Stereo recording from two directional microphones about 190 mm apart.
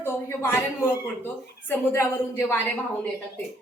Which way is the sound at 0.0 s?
10° left (ahead or behind).